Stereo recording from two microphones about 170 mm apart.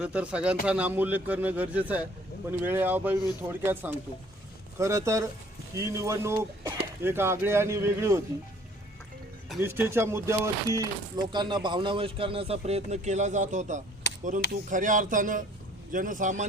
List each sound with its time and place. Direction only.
0.0 s speech: 5° right (ahead or behind)
9.6 s a man's voice: 15° right (ahead or behind); by 16.5 s 45° right (ahead or behind)